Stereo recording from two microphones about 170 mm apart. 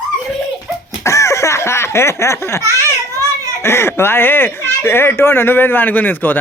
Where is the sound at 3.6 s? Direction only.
15° left (ahead or behind).